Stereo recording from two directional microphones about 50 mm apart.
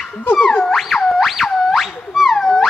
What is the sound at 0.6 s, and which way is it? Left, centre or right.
Music, centre.